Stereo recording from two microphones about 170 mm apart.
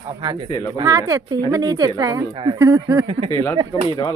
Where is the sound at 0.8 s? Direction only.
20° right (ahead or behind).